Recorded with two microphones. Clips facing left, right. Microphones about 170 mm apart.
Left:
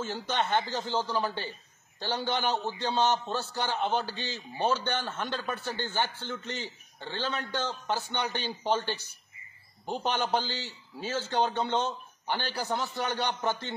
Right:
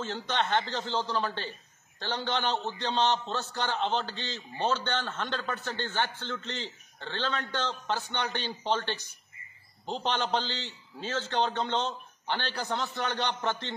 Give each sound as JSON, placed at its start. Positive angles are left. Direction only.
{"t": 0.0, "sound": "a man's voice", "side_deg": 10}